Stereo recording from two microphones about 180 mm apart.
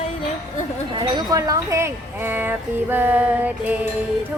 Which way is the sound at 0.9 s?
25° right (ahead or behind).